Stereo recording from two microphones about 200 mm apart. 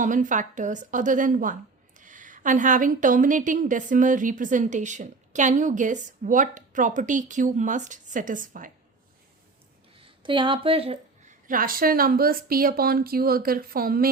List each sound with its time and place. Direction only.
0.0 s a woman's voice: 40° right (ahead or behind)
10.0 s a sound: 25° right (ahead or behind)
11.4 s speech: 45° right (ahead or behind)